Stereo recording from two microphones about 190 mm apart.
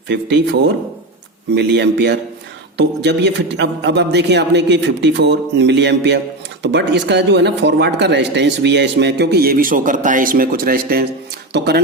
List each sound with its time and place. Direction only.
0.1 s speech: 65° right (ahead or behind)